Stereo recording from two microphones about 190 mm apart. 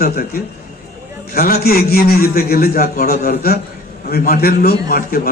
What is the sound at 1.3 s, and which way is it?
A man's voice, 55° left (ahead or behind).